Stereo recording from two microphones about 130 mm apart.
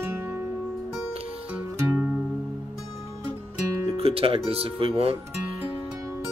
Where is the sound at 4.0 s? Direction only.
50° right (ahead or behind).